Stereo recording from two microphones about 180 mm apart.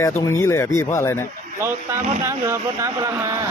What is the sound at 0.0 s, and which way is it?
Speech, 15° left (ahead or behind).